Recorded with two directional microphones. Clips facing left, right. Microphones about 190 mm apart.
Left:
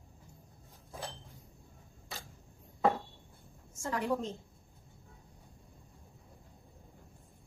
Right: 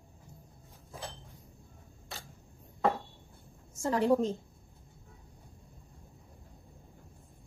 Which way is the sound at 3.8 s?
35° right (ahead or behind).